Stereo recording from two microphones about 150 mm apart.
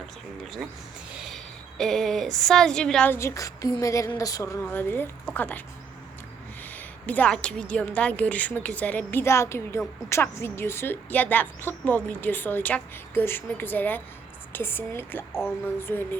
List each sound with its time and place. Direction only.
1.1 s a sound: centre (ahead or behind)
1.8 s a woman's voice: centre (ahead or behind)
3.2 s a woman's voice: 20° left (ahead or behind)
6.7 s a woman's voice: 10° left (ahead or behind)